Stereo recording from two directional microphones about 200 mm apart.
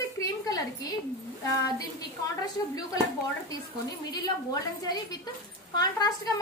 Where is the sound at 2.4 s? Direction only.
20° left (ahead or behind).